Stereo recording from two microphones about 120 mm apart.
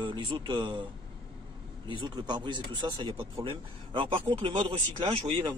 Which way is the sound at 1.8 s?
35° right (ahead or behind).